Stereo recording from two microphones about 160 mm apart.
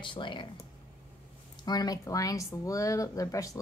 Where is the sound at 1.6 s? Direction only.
25° left (ahead or behind).